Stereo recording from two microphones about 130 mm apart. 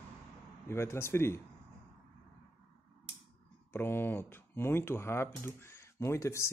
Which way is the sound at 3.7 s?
15° left (ahead or behind).